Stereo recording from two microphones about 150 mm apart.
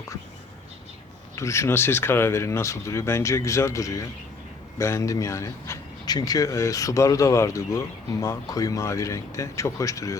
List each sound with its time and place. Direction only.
1.4 s speech: 20° left (ahead or behind)